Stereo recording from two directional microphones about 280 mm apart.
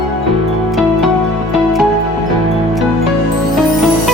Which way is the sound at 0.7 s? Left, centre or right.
Centre.